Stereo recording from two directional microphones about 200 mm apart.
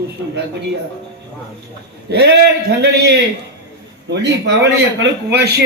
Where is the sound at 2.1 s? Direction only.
55° right (ahead or behind).